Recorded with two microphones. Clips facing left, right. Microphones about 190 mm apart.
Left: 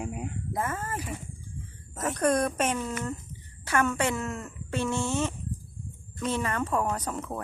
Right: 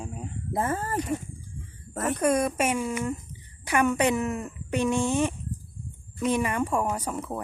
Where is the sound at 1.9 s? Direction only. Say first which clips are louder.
Right 4 dB; 60° right (ahead or behind).